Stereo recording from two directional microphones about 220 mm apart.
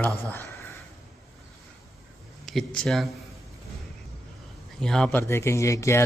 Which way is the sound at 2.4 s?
Centre (ahead or behind).